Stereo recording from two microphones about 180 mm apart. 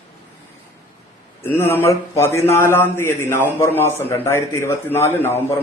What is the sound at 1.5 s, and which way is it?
A man's voice, 15° left (ahead or behind).